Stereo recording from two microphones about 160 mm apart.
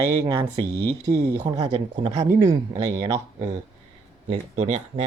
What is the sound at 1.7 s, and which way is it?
Speech, 35° right (ahead or behind).